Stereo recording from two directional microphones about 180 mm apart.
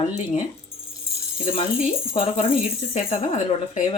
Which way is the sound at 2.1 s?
35° left (ahead or behind).